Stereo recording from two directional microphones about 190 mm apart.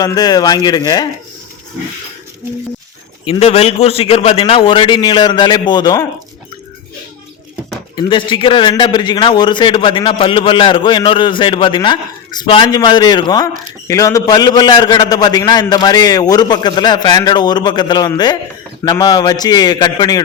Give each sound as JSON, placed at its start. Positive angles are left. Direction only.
{"t": 0.0, "sound": "a man's voice", "side_deg": 20}
{"t": 3.2, "sound": "a man's voice", "side_deg": 30}
{"t": 7.9, "sound": "a man's voice", "side_deg": 25}